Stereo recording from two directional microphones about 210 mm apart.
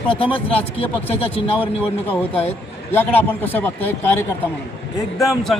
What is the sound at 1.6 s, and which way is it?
A man's voice, 10° left (ahead or behind).